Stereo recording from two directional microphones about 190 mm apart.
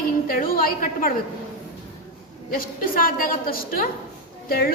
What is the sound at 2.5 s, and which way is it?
A woman's voice, 50° left (ahead or behind).